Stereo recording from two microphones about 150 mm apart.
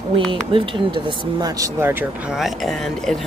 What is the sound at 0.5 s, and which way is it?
Speech, 35° right (ahead or behind).